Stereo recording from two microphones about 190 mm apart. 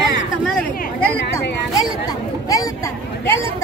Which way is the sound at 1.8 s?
20° left (ahead or behind).